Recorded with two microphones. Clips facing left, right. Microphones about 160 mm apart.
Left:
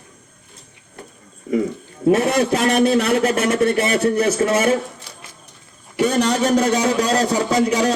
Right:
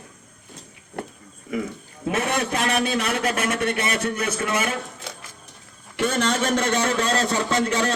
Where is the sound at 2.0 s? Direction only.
35° left (ahead or behind).